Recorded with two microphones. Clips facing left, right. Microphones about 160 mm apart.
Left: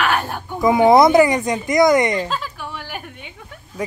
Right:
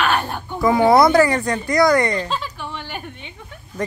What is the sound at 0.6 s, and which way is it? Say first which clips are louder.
Speech: left 2 dB; 20° left (ahead or behind).